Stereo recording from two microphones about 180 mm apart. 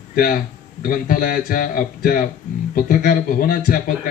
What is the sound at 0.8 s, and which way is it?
Speech, 50° left (ahead or behind).